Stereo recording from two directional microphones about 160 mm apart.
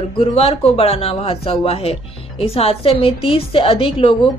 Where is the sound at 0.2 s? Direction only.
40° left (ahead or behind).